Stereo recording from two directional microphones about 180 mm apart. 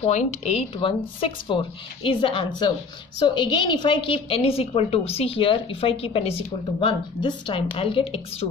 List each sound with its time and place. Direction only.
0.0 s a woman's voice: 35° left (ahead or behind)